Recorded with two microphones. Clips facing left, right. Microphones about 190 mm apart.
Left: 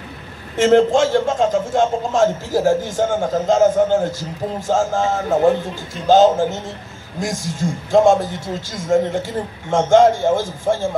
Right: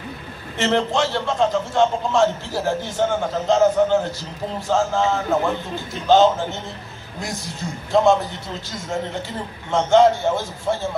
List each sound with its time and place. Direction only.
0.6 s a man's voice: 45° left (ahead or behind)